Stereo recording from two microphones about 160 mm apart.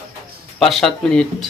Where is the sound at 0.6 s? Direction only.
Centre (ahead or behind).